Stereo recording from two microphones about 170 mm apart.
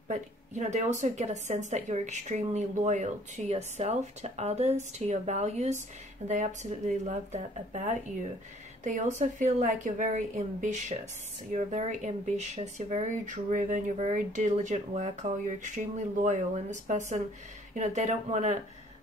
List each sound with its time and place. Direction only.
0.1 s a woman's voice: 45° right (ahead or behind)